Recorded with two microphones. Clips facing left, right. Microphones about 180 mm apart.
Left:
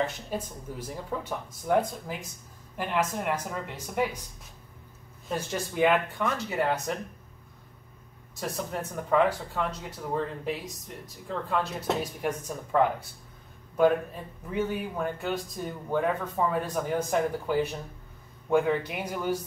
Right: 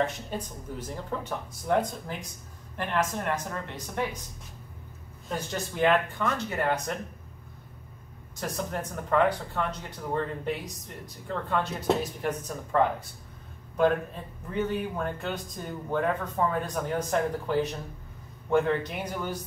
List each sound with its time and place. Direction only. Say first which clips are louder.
0.3 s speech: left 1 dB; 10° left (ahead or behind)
5.3 s speech: left 1 dB; 5° left (ahead or behind)
8.4 s speech: even; centre (ahead or behind)
14.5 s speech: right 1 dB; 5° left (ahead or behind)